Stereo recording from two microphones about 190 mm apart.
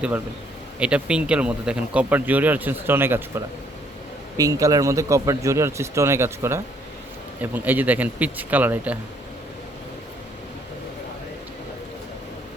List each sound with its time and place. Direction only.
0.8 s speech: 5° right (ahead or behind)